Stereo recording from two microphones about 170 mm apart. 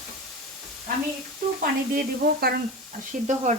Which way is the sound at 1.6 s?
60° right (ahead or behind).